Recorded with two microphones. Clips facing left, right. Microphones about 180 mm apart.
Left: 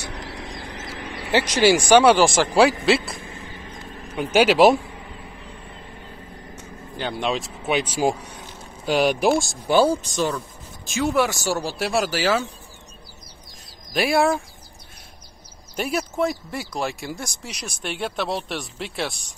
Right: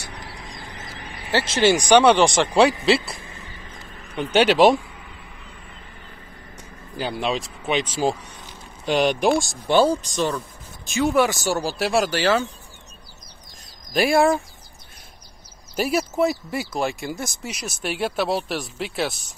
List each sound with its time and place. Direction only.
0.1 s a sound: 80° left
1.3 s speech: 15° left (ahead or behind)
7.0 s speech: 5° right (ahead or behind)
13.9 s speech: centre (ahead or behind)
15.7 s speech: 5° right (ahead or behind)